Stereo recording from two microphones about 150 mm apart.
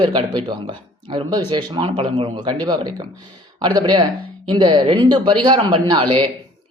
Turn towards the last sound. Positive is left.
turn(degrees=-30)  # may be behind; listen again after turning